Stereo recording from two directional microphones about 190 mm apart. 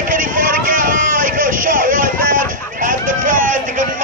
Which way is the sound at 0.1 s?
45° right (ahead or behind).